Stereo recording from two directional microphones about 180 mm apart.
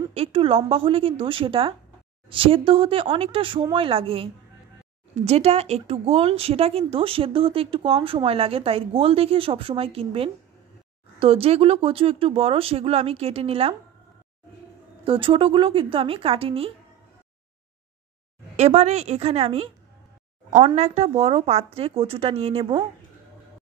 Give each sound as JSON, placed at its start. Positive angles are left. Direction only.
{"t": 0.1, "sound": "speech", "side_deg": -30}
{"t": 15.0, "sound": "speech", "side_deg": -30}
{"t": 18.6, "sound": "speech", "side_deg": -35}